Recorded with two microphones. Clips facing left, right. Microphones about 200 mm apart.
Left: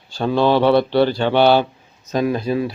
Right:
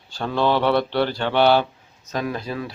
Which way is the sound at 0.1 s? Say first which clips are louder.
Left 5 dB; 15° left (ahead or behind).